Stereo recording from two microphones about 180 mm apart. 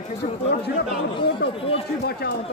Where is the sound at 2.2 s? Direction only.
60° left (ahead or behind).